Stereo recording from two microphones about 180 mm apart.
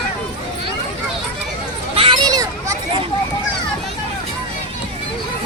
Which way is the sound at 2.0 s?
25° right (ahead or behind).